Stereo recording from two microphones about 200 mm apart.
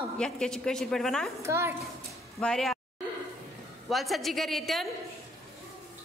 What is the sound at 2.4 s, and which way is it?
Speech, centre (ahead or behind).